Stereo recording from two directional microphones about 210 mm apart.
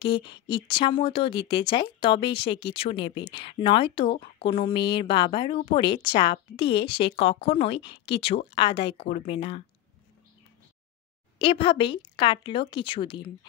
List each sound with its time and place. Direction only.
0.0 s speech: 20° left (ahead or behind)
11.3 s speech: 25° left (ahead or behind)